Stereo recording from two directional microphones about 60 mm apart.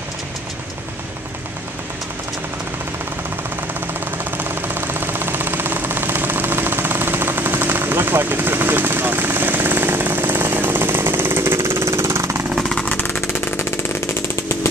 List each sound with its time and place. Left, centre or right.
4.2 s jackhammer: right
12.5 s vehicle: centre
12.8 s vehicle: left
13.2 s a sound: left
14.2 s chainsaw: left